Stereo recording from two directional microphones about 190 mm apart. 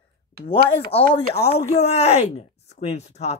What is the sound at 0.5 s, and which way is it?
Speech, 30° left (ahead or behind).